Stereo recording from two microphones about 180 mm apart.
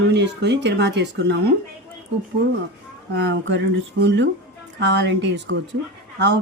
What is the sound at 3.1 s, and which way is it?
Speech, 70° right (ahead or behind).